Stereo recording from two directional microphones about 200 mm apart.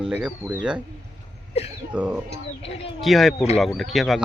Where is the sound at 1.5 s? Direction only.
30° left (ahead or behind).